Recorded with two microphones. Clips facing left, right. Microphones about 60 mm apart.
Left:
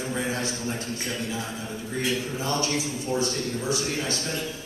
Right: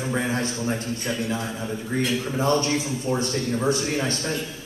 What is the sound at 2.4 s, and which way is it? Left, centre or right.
Speech, right.